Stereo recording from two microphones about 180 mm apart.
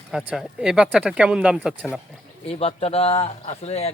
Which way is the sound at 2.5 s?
35° left (ahead or behind).